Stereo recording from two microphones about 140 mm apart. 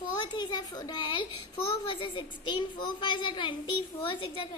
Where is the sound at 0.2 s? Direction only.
30° left (ahead or behind).